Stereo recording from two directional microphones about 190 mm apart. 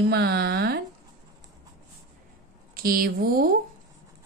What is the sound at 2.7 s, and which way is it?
Speech, 50° right (ahead or behind).